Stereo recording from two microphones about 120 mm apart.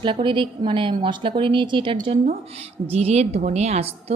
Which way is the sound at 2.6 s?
60° right (ahead or behind).